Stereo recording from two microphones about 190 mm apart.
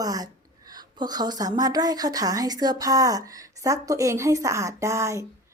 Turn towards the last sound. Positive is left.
turn(degrees=-15)  # may be behind; listen again after turning